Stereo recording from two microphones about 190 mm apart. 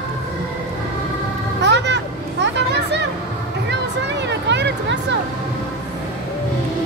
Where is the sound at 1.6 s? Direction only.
65° right (ahead or behind).